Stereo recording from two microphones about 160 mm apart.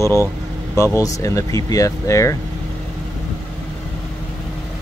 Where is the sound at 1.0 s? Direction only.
20° left (ahead or behind).